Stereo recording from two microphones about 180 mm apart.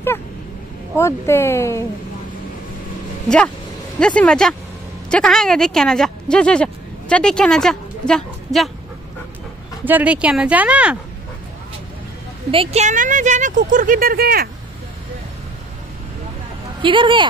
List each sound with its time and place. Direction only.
0.9 s speech: 15° left (ahead or behind)
4.0 s speech: 5° left (ahead or behind)
9.8 s speech: 10° right (ahead or behind)
12.4 s speech: 35° right (ahead or behind); by 14.5 s 60° right (ahead or behind)
16.8 s speech: 25° right (ahead or behind)